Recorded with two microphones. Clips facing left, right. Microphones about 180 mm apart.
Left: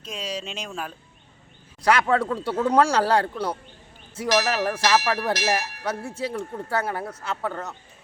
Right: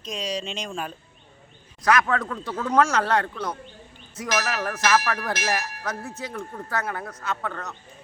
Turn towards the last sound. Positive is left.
turn(degrees=25)  # may be behind; listen again after turning